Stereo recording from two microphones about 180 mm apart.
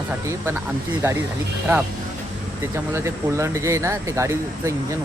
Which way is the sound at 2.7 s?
15° right (ahead or behind).